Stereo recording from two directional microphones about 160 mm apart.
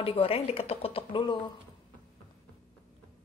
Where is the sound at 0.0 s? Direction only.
35° left (ahead or behind).